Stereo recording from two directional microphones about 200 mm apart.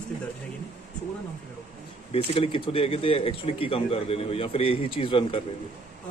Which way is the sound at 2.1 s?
30° left (ahead or behind).